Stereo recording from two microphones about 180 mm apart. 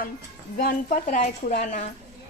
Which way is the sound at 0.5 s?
55° left (ahead or behind).